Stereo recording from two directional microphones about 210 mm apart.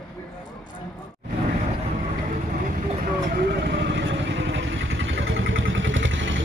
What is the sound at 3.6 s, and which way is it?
Vehicle, 55° right (ahead or behind).